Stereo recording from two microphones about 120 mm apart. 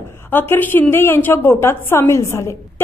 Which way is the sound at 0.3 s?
15° left (ahead or behind).